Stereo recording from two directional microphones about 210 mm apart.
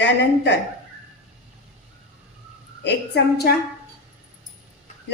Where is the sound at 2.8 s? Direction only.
50° left (ahead or behind).